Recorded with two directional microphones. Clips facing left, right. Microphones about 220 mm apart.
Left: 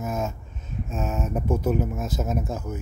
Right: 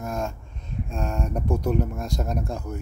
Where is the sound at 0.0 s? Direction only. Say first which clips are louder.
Left 1 dB; 5° left (ahead or behind).